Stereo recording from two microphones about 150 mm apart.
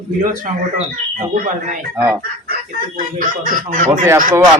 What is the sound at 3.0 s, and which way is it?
Speech, 60° right (ahead or behind).